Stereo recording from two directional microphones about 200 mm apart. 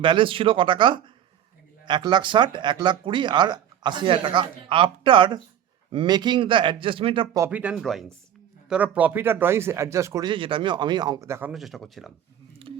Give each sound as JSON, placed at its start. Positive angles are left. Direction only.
{"t": 0.0, "sound": "speech", "side_deg": -25}
{"t": 7.4, "sound": "speech", "side_deg": -5}
{"t": 11.5, "sound": "speech", "side_deg": 0}